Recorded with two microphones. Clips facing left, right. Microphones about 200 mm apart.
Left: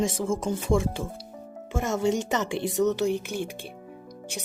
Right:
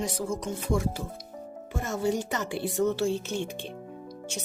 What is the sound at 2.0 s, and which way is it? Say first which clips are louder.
Speech: left 2 dB; 20° left (ahead or behind).